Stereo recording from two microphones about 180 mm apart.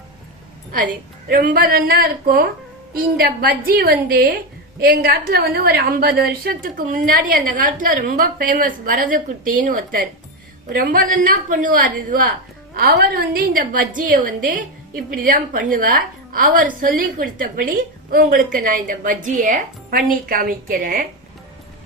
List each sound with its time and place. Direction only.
1.3 s a woman's voice: 50° right (ahead or behind)